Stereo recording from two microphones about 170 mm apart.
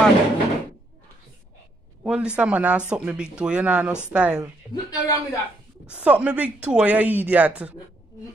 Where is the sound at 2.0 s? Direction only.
5° right (ahead or behind).